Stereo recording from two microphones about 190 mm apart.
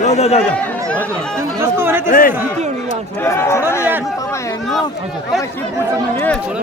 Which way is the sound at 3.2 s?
15° left (ahead or behind).